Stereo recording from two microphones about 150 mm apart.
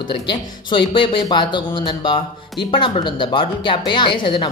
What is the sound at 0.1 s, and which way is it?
A woman's voice, 30° left (ahead or behind).